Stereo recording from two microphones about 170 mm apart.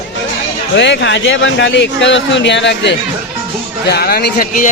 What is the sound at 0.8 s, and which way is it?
Speech, 90° left.